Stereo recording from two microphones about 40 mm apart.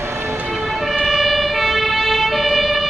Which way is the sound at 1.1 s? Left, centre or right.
Centre.